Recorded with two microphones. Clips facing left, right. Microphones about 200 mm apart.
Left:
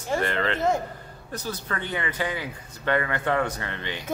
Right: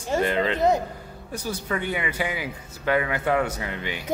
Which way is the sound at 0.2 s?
15° right (ahead or behind).